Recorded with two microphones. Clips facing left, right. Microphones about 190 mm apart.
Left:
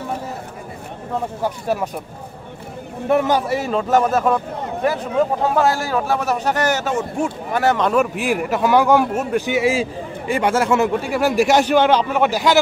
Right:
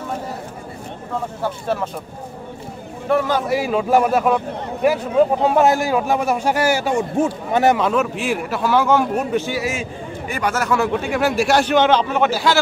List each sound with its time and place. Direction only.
1.4 s a man's voice: 10° left (ahead or behind)
3.1 s a man's voice: 15° left (ahead or behind)
3.4 s a man's voice: 5° right (ahead or behind)
5.4 s a man's voice: 20° right (ahead or behind)
7.7 s speech: 5° right (ahead or behind)
8.0 s a man's voice: 15° left (ahead or behind)